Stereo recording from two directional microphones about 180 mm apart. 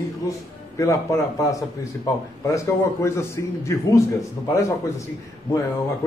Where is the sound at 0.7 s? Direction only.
15° left (ahead or behind).